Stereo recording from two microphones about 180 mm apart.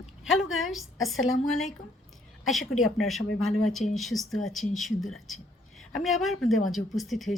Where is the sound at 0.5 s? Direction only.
Centre (ahead or behind).